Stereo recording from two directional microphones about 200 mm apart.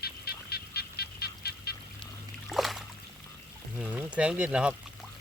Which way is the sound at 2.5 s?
Centre (ahead or behind).